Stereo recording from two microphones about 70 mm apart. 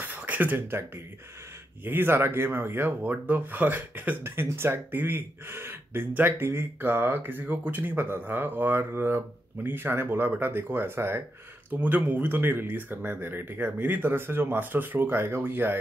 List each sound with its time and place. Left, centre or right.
0.0 s a sound: right
1.9 s speech: right
11.7 s speech: right